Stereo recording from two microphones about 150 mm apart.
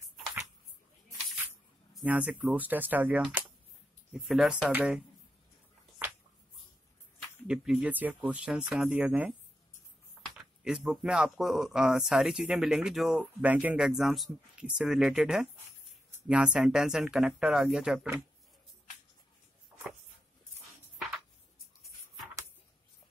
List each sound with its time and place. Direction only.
2.0 s speech: 10° right (ahead or behind)
7.4 s speech: 5° right (ahead or behind)
10.3 s speech: 5° right (ahead or behind)